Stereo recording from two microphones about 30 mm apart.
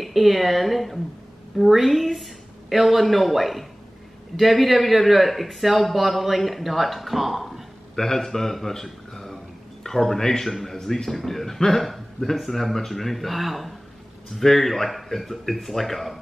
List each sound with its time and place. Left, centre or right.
0.0 s speech: centre
7.9 s a man's voice: centre
9.1 s a sound: centre
9.8 s a man's voice: centre
14.4 s a man's voice: centre